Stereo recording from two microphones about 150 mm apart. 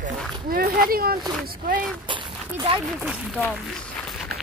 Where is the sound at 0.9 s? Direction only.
80° right.